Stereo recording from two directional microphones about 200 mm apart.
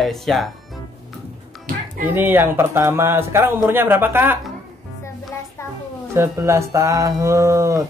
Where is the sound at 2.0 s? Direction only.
10° right (ahead or behind).